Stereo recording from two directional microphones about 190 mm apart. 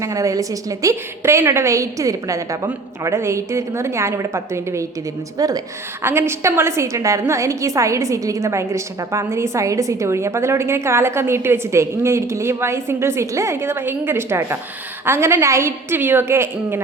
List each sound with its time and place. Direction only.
0.0 s a woman's voice: 15° right (ahead or behind)